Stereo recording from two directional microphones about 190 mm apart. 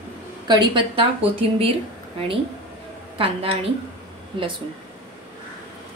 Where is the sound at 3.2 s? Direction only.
30° right (ahead or behind).